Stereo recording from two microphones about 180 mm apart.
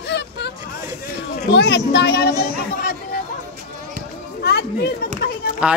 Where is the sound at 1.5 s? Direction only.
70° left (ahead or behind).